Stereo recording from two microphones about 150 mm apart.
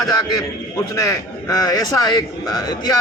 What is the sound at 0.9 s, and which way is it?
A man's voice, 20° left (ahead or behind).